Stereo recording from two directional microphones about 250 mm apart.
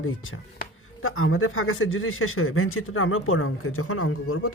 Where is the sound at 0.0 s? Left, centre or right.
Left.